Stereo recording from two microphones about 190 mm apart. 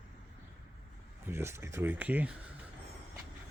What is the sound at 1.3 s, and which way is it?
Speech, 15° right (ahead or behind).